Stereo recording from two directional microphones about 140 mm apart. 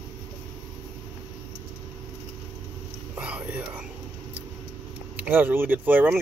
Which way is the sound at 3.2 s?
10° right (ahead or behind).